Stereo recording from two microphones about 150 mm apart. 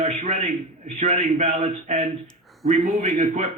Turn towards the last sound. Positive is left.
turn(degrees=-50)  # may be behind; listen again after turning